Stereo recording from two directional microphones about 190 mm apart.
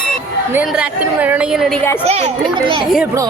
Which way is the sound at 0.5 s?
5° right (ahead or behind).